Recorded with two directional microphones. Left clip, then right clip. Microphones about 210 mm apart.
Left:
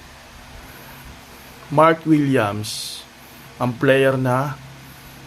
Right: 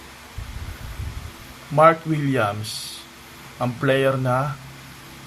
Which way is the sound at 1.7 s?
35° left (ahead or behind).